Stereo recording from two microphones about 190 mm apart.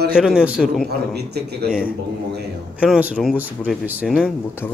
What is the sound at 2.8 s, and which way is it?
Speech, 5° right (ahead or behind).